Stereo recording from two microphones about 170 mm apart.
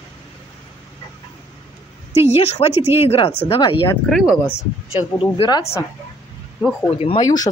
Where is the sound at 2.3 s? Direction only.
35° left (ahead or behind).